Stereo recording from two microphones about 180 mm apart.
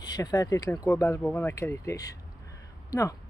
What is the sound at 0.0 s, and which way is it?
Speech, 20° left (ahead or behind).